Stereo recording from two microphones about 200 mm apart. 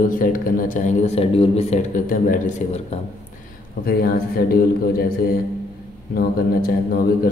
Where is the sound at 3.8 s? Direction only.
50° left (ahead or behind).